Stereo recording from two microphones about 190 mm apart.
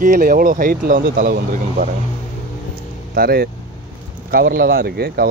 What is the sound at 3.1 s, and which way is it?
Speech, 50° right (ahead or behind).